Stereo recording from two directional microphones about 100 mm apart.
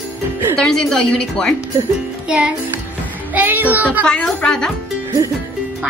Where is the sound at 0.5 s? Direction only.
10° left (ahead or behind).